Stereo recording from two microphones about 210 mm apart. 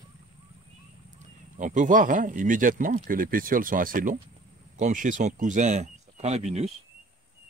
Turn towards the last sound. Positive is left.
turn(degrees=-30)  # may be behind; listen again after turning